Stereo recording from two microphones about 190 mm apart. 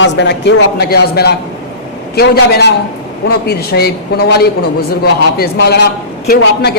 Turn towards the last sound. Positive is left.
turn(degrees=60)  # may be behind; listen again after turning